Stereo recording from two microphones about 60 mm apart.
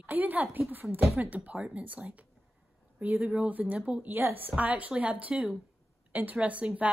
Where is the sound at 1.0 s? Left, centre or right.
Right.